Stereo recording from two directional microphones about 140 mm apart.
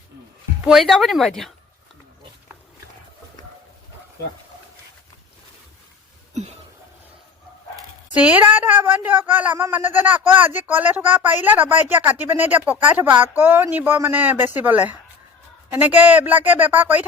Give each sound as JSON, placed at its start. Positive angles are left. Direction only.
{"t": 0.6, "sound": "a woman's voice", "side_deg": 0}
{"t": 6.3, "sound": "a sound", "side_deg": -55}
{"t": 8.1, "sound": "speech", "side_deg": -10}